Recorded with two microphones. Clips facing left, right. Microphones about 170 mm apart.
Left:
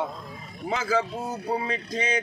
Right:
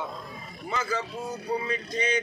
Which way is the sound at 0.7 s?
90° left.